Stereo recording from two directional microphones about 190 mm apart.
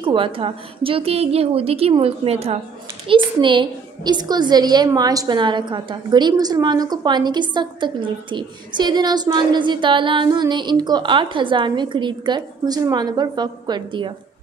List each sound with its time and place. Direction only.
0.0 s a woman's voice: 25° right (ahead or behind)